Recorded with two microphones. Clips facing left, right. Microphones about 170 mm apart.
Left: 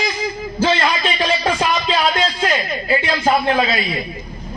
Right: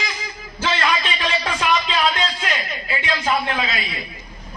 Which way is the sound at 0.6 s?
35° left (ahead or behind).